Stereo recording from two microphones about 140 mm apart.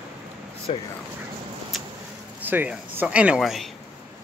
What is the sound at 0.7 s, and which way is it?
Speech, 45° left (ahead or behind).